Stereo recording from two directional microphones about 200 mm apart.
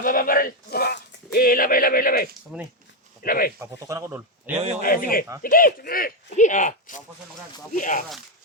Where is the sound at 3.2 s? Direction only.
45° left (ahead or behind).